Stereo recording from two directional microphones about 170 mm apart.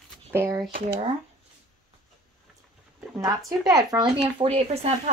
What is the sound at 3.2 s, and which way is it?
Speech, 20° right (ahead or behind).